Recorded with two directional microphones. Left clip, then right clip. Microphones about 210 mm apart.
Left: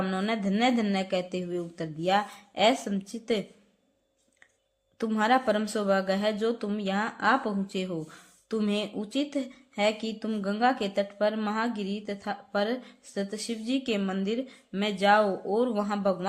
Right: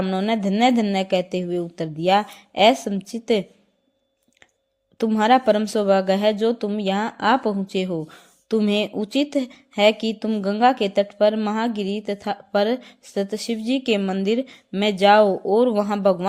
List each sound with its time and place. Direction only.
0.0 s speech: 25° right (ahead or behind)
4.9 s speech: 30° right (ahead or behind)